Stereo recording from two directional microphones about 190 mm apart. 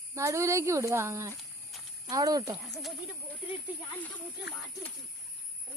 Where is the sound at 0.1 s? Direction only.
15° right (ahead or behind).